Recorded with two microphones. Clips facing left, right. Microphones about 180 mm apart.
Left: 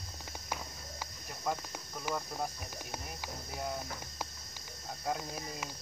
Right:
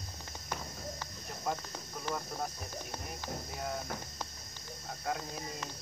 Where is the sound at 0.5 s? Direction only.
10° left (ahead or behind).